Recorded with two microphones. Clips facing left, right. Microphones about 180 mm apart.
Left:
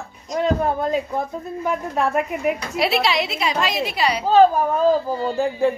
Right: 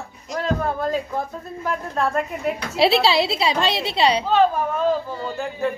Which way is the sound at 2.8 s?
30° right (ahead or behind).